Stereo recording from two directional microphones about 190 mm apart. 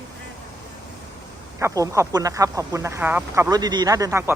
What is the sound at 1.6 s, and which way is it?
Speech, 15° right (ahead or behind).